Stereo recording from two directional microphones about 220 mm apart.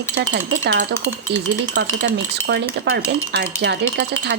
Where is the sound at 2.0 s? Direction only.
50° right (ahead or behind).